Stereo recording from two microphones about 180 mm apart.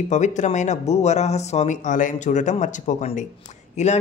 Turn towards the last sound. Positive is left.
turn(degrees=40)  # may be behind; listen again after turning